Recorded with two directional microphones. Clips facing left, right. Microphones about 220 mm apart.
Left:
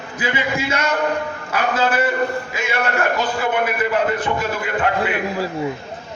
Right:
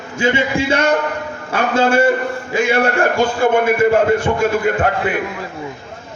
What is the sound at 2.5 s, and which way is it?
Speech, 30° right (ahead or behind).